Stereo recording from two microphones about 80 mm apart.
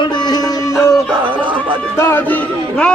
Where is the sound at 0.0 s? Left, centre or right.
Left.